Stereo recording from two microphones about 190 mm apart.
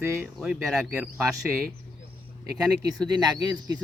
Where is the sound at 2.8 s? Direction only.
20° right (ahead or behind).